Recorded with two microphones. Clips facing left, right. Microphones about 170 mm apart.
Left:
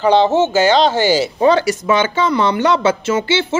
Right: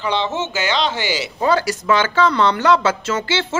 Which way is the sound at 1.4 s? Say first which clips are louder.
Left 1 dB; 20° left (ahead or behind).